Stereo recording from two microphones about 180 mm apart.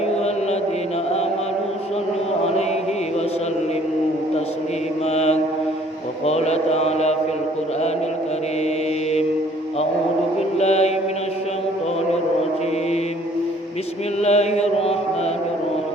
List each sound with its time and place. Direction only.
5.1 s mantra: 35° left (ahead or behind)
10.6 s mantra: 35° left (ahead or behind)
14.2 s mantra: 35° left (ahead or behind)